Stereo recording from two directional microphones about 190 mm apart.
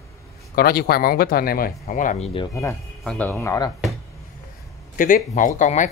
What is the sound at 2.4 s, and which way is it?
Speech, 15° left (ahead or behind).